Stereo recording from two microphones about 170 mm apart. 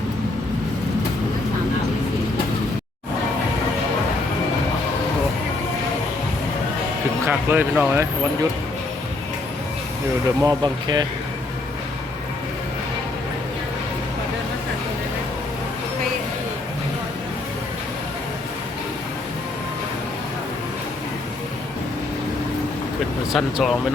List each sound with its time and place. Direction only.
7.3 s speech: 10° right (ahead or behind)
10.4 s speech: 25° right (ahead or behind)
23.3 s speech: centre (ahead or behind)